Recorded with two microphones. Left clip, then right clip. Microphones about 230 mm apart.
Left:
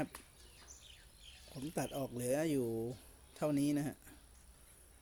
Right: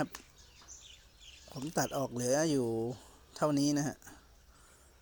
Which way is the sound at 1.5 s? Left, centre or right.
Right.